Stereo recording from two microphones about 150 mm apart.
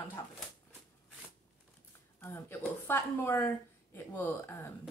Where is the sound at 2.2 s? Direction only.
15° left (ahead or behind).